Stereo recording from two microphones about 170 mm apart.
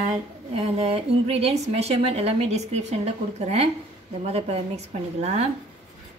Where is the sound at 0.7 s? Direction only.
35° right (ahead or behind).